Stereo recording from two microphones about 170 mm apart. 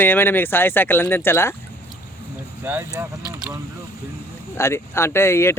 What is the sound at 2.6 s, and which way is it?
Speech, 10° right (ahead or behind).